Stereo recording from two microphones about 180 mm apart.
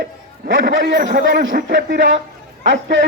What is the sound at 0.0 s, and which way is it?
A man's voice, 60° right (ahead or behind).